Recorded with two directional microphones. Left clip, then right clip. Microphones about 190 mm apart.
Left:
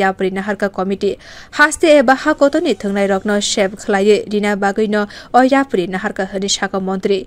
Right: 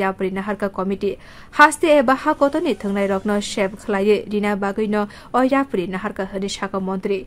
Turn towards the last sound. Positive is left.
turn(degrees=20)  # may be behind; listen again after turning